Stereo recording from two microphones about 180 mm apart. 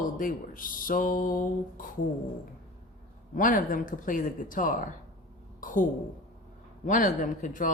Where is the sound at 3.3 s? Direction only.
50° left (ahead or behind).